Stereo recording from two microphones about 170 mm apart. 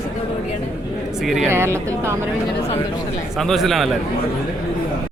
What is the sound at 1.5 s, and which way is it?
Speech, 15° right (ahead or behind).